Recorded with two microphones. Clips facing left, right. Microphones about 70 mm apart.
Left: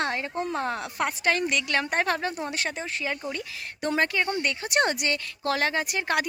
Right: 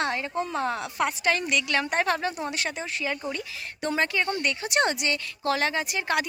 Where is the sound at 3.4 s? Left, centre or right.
Left.